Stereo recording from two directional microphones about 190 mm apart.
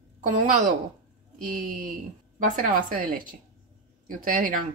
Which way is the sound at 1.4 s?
45° right (ahead or behind).